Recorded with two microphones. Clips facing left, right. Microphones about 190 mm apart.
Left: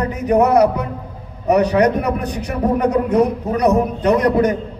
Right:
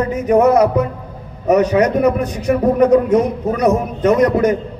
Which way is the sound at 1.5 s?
35° left (ahead or behind).